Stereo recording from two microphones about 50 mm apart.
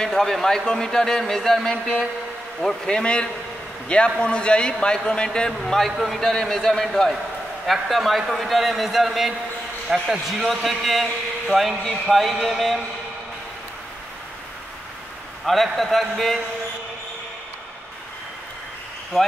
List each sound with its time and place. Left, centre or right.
0.0 s a man's voice: centre
3.0 s a man's voice: centre
5.7 s a man's voice: centre
15.4 s a man's voice: centre